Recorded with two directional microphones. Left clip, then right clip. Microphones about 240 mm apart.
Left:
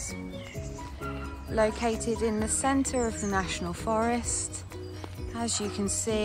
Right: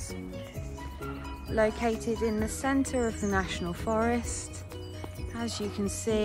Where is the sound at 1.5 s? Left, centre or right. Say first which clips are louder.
Left 1 dB; centre.